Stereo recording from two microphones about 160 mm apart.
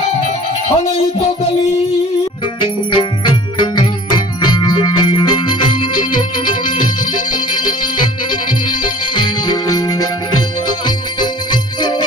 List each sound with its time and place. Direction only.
2.6 s music: 30° left (ahead or behind)
9.1 s music: 25° left (ahead or behind)